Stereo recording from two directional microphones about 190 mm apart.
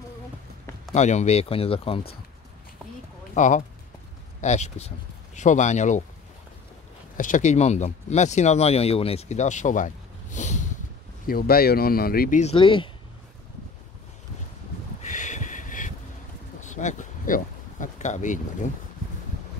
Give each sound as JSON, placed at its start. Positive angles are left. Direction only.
{"t": 0.9, "sound": "speech", "side_deg": 35}
{"t": 3.3, "sound": "speech", "side_deg": 40}
{"t": 7.2, "sound": "speech", "side_deg": 45}
{"t": 11.2, "sound": "speech", "side_deg": 50}
{"t": 12.4, "sound": "speech", "side_deg": 30}
{"t": 15.0, "sound": "a sound", "side_deg": 40}